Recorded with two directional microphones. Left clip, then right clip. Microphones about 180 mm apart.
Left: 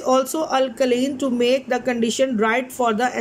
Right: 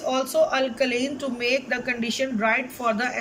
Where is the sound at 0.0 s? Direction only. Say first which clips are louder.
Left 2 dB; 35° left (ahead or behind).